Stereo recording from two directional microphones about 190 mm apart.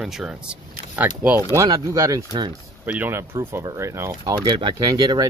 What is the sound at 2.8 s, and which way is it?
Speech, 10° right (ahead or behind).